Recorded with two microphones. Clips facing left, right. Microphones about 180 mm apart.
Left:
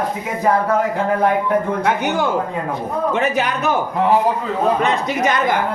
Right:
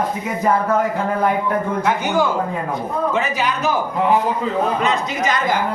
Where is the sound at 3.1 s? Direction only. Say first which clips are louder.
Left 2 dB; 60° left (ahead or behind).